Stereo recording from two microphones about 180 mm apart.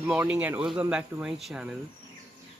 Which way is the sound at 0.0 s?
5° right (ahead or behind).